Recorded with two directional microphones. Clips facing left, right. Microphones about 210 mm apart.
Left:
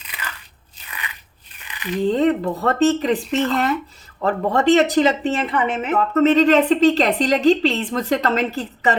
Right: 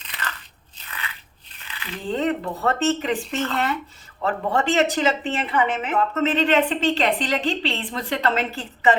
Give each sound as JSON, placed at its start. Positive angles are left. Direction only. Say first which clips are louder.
{"t": 0.1, "sound": "biting", "louder": "right 1 dB", "side_deg": 10}
{"t": 0.9, "sound": "crushing", "louder": "left 1 dB", "side_deg": 15}
{"t": 1.6, "sound": "a sound", "louder": "left 9 dB", "side_deg": 15}
{"t": 2.0, "sound": "a woman's voice", "louder": "left 6 dB", "side_deg": 35}